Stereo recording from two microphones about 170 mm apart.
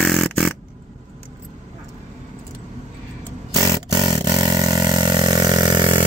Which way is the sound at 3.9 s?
25° right (ahead or behind).